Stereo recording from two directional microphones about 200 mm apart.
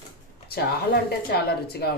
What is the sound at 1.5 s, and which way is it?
Speech, 50° left (ahead or behind).